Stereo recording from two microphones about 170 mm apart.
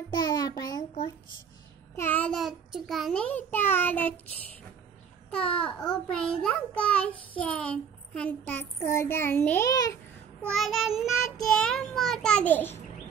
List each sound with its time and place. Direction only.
0.1 s a sound: 25° left (ahead or behind)
2.0 s a child's voice: 10° left (ahead or behind)
5.3 s a child's voice: 5° left (ahead or behind)
9.7 s a child's voice: 20° left (ahead or behind)
10.5 s child singing: centre (ahead or behind)